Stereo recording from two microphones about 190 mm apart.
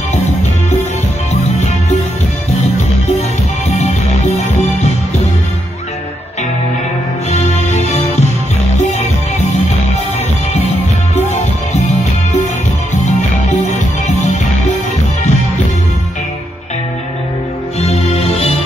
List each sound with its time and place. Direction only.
0.1 s music: 35° left (ahead or behind)
3.6 s music: 35° left (ahead or behind)
7.2 s music: 35° left (ahead or behind)
12.9 s music: 35° left (ahead or behind)
17.7 s music: 35° left (ahead or behind)